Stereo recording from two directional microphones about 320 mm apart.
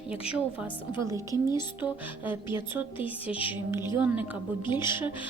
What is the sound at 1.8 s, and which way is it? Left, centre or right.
Speech, centre.